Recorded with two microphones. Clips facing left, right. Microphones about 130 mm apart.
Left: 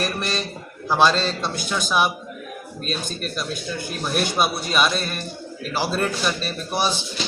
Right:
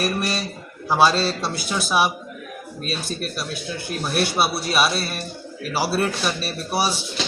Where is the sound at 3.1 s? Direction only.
5° right (ahead or behind).